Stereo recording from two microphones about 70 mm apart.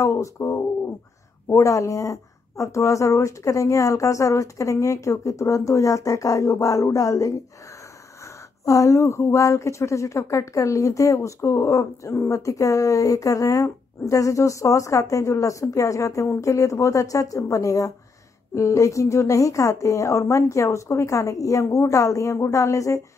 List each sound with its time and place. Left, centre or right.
0.0 s a woman's voice: left
8.6 s a woman's voice: left